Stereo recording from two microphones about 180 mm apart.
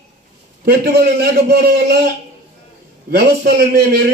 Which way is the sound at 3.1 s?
65° right (ahead or behind).